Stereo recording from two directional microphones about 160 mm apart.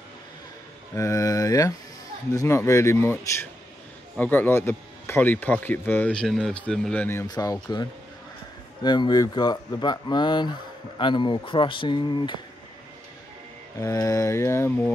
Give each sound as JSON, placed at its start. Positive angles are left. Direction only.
{"t": 0.9, "sound": "speech", "side_deg": 20}
{"t": 7.2, "sound": "speech", "side_deg": 20}
{"t": 13.7, "sound": "speech", "side_deg": 20}